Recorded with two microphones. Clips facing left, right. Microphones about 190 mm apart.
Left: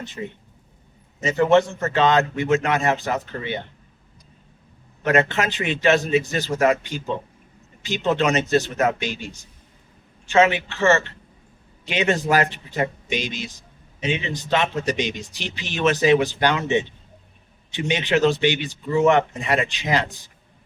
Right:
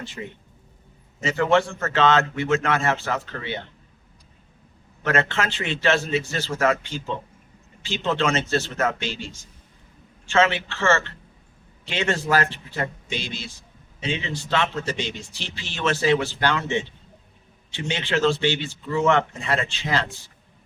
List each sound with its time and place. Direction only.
0.2 s a man's voice: 30° left (ahead or behind)
5.0 s a man's voice: 15° left (ahead or behind)